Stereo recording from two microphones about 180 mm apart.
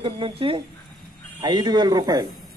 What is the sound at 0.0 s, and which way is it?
Speech, 30° right (ahead or behind).